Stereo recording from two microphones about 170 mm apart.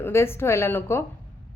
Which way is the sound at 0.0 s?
15° left (ahead or behind).